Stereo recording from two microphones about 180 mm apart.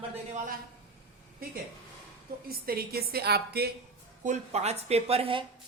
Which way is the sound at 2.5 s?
55° right (ahead or behind).